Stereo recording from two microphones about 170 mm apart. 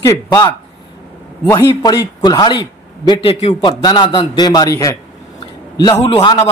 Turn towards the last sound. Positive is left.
turn(degrees=30)  # may be behind; listen again after turning